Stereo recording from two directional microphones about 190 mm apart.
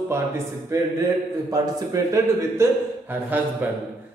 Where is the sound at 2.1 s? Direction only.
10° right (ahead or behind).